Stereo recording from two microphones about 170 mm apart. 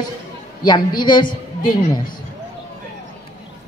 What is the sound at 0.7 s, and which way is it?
Speech, 25° left (ahead or behind).